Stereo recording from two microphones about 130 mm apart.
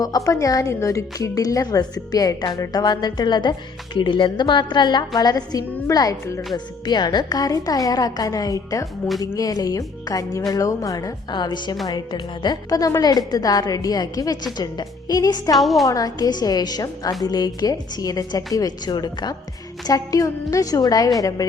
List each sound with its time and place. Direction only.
0.3 s a woman's voice: 25° left (ahead or behind)
15.5 s a woman's voice: centre (ahead or behind)
15.9 s a woman's voice: 30° left (ahead or behind)